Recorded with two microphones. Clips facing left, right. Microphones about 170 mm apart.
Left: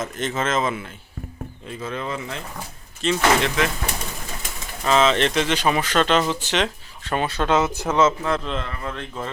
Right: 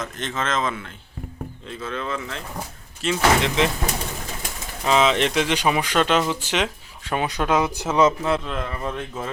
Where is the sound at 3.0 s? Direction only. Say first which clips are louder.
Left 2 dB; 5° right (ahead or behind).